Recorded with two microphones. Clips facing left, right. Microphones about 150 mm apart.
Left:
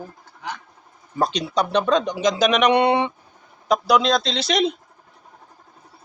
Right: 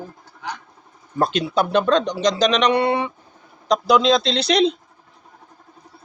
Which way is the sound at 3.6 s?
5° left (ahead or behind).